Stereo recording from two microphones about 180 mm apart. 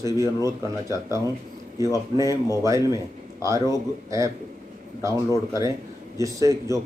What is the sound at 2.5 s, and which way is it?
Speech, 20° right (ahead or behind).